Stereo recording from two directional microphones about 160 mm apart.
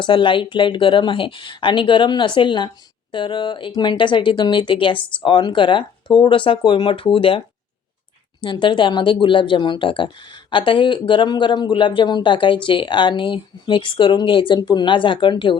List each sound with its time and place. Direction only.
0.0 s speech: 30° left (ahead or behind)